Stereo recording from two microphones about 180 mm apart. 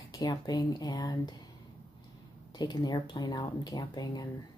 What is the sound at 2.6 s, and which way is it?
A woman's voice, 20° left (ahead or behind).